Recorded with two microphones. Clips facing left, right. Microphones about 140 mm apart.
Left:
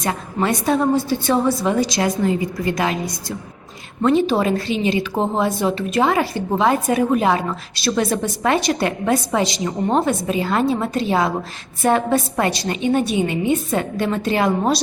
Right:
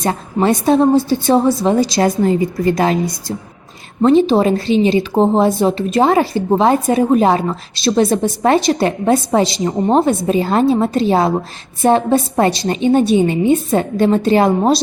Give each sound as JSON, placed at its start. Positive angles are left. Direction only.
{"t": 0.0, "sound": "a woman's voice", "side_deg": -30}